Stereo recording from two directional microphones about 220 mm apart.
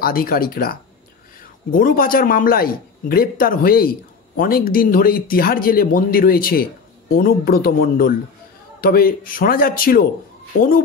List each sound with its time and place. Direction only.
0.0 s speech: 40° left (ahead or behind)